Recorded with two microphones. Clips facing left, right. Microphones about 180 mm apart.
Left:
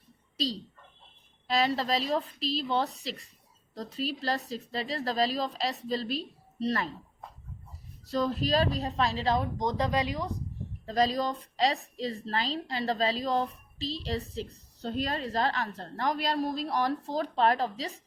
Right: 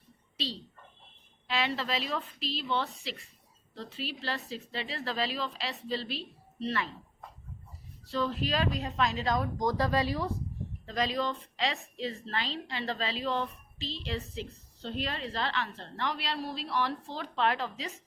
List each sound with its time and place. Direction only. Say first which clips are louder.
0.3 s a woman's voice: left 5 dB; 40° left (ahead or behind)
8.0 s a woman's voice: left 3 dB; 40° left (ahead or behind); by 10.4 s 15° left (ahead or behind)
10.8 s a woman's voice: left 4 dB; 35° left (ahead or behind)